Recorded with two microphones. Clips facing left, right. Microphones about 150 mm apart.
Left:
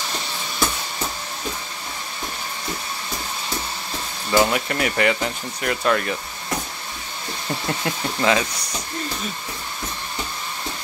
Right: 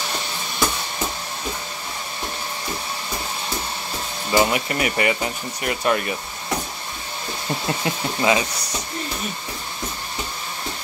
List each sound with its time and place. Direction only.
4.3 s speech: 5° right (ahead or behind)
7.6 s speech: 5° right (ahead or behind)